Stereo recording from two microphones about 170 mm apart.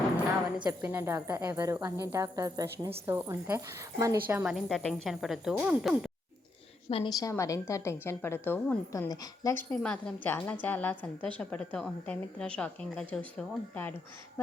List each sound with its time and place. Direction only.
0.6 s speech: 15° right (ahead or behind)
4.5 s speech: centre (ahead or behind)
6.9 s a woman's voice: 30° left (ahead or behind)
7.3 s a woman's voice: 20° left (ahead or behind)
9.7 s a woman's voice: 5° left (ahead or behind)